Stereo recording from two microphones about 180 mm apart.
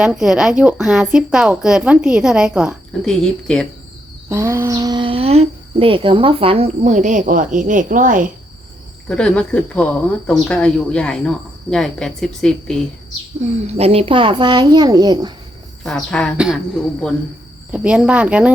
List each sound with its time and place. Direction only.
0.0 s speech: 5° right (ahead or behind)
4.3 s speech: 15° right (ahead or behind); by 8.3 s 45° right (ahead or behind)
9.0 s speech: 5° left (ahead or behind)
13.7 s speech: 35° right (ahead or behind)
15.8 s speech: centre (ahead or behind)
17.7 s speech: 5° right (ahead or behind)